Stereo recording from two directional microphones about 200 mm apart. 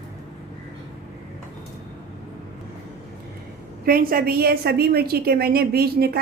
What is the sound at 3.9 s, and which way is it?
A woman's voice, 45° right (ahead or behind).